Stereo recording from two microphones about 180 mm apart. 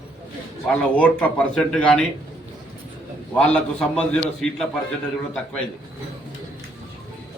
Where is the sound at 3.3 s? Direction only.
5° left (ahead or behind).